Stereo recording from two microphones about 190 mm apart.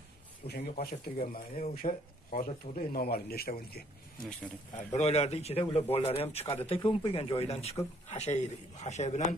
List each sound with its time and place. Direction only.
0.5 s speech: 55° left (ahead or behind)
4.7 s speech: 35° left (ahead or behind)